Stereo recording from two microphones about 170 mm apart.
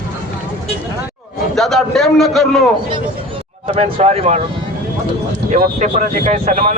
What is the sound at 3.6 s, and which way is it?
Speech, 35° right (ahead or behind).